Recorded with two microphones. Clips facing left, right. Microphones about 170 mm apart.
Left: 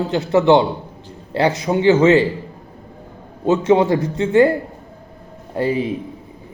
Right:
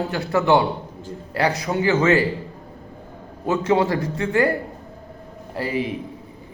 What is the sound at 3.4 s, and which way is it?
A man's voice, 20° left (ahead or behind).